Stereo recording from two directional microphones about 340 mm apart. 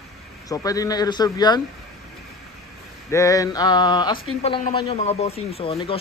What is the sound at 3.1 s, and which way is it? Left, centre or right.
A man's voice, centre.